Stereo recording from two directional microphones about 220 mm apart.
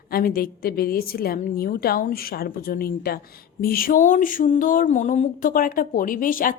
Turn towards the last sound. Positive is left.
turn(degrees=40)  # may be behind; listen again after turning